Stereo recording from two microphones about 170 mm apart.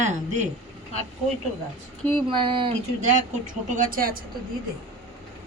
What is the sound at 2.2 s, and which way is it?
Speech, 30° right (ahead or behind).